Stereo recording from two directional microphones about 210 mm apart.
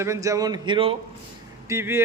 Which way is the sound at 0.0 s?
15° right (ahead or behind).